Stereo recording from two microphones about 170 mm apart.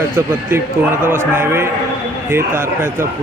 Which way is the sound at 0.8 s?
10° right (ahead or behind).